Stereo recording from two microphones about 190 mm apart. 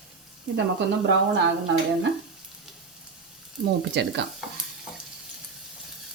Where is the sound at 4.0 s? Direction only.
65° right (ahead or behind).